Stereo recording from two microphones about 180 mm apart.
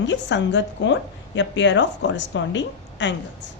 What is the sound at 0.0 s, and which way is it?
A woman's voice, 90° left.